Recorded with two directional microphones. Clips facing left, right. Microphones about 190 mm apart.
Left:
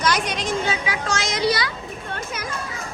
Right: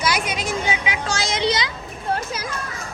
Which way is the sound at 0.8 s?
20° right (ahead or behind).